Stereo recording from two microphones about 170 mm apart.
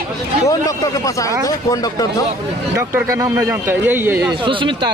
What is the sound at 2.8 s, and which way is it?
A man's voice, 15° right (ahead or behind).